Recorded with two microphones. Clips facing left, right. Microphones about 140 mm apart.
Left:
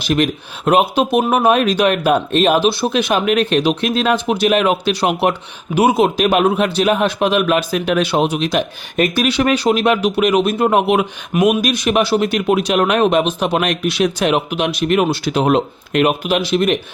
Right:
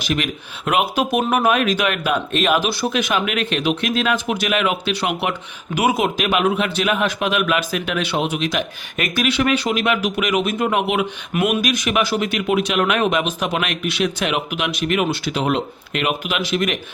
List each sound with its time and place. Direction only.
0.0 s speech: 35° left (ahead or behind)